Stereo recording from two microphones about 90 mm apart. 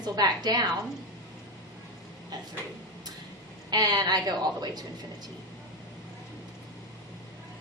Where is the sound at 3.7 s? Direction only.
45° right (ahead or behind).